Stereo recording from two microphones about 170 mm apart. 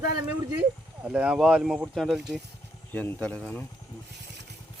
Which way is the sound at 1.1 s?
5° right (ahead or behind).